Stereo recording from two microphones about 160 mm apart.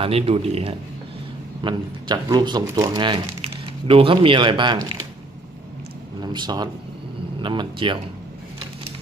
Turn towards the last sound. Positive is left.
turn(degrees=-30)  # may be behind; listen again after turning